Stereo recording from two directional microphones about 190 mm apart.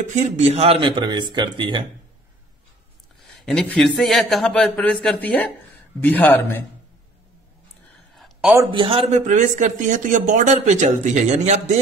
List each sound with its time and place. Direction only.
0.0 s speech: 40° right (ahead or behind)
3.2 s speech: centre (ahead or behind)
8.2 s a sound: 5° right (ahead or behind)
8.7 s speech: 25° right (ahead or behind)
9.1 s speech: 40° right (ahead or behind)